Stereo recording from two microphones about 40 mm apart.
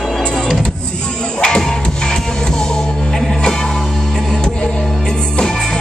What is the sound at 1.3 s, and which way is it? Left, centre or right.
Music, left.